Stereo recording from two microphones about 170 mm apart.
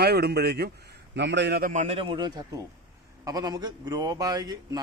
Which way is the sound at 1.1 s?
90° right.